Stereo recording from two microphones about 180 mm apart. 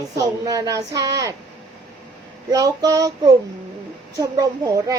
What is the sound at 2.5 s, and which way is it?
A woman's voice, 20° right (ahead or behind).